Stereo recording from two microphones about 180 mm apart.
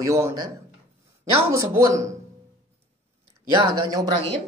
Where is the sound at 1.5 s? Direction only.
15° right (ahead or behind).